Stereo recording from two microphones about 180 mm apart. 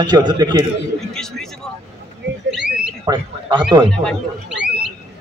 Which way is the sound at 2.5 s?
Centre (ahead or behind).